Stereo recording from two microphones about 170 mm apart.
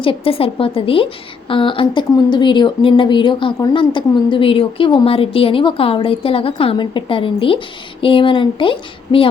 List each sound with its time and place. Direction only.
0.0 s a woman's voice: 30° left (ahead or behind)